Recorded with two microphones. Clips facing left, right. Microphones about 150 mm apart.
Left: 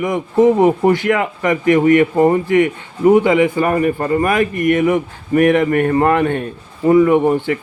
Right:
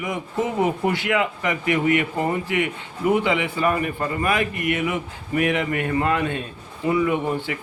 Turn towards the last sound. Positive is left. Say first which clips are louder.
# left 10 dB
turn(degrees=50)  # may be behind; listen again after turning